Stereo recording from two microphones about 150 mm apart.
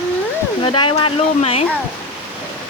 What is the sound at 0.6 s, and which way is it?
Speech, 30° left (ahead or behind).